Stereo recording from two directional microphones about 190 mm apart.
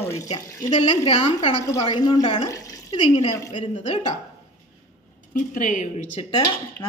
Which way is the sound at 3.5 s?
40° left (ahead or behind).